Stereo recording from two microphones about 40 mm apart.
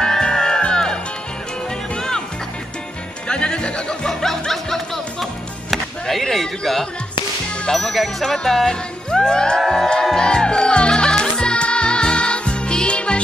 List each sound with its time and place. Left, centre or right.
0.0 s music: centre
2.0 s music: centre
3.3 s music: left
7.6 s speech: centre
7.9 s music: centre; by 13.2 s left